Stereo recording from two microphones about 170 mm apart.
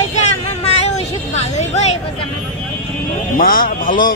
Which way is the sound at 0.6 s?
40° left (ahead or behind).